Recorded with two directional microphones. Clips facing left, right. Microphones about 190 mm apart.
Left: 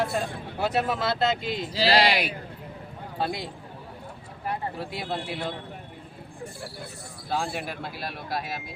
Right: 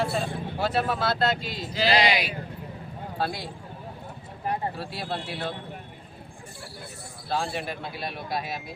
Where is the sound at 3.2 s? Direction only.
20° left (ahead or behind).